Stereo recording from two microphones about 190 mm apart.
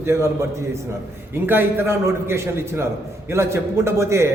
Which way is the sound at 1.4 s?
10° right (ahead or behind).